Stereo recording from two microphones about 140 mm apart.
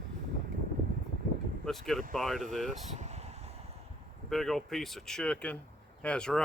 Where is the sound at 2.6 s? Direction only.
55° right (ahead or behind).